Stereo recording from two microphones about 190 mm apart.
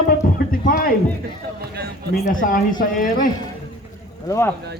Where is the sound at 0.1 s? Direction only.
50° left (ahead or behind).